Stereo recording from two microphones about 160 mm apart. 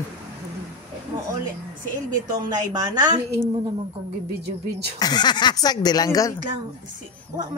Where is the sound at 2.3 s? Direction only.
25° right (ahead or behind).